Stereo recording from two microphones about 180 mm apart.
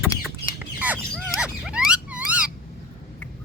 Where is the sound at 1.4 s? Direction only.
5° right (ahead or behind).